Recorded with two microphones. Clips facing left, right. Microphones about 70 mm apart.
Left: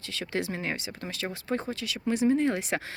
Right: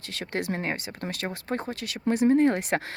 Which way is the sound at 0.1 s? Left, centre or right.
Right.